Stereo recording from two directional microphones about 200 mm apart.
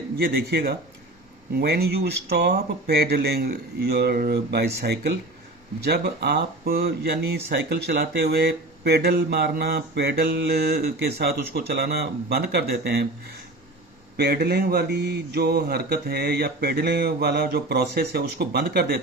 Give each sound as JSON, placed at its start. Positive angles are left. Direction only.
{"t": 0.2, "sound": "speech", "side_deg": -50}
{"t": 14.2, "sound": "speech", "side_deg": -50}